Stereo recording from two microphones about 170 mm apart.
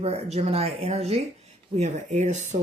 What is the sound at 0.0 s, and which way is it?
Speech, 40° right (ahead or behind).